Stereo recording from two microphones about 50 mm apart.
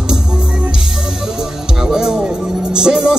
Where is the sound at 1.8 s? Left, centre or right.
Centre.